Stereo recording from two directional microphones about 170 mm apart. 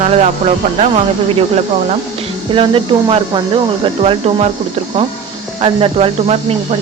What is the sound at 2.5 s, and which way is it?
Speech, 30° right (ahead or behind).